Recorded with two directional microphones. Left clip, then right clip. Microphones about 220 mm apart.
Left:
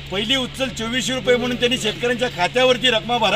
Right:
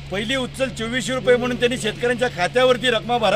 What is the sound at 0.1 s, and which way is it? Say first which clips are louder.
A man's voice: left 3 dB; 15° right (ahead or behind).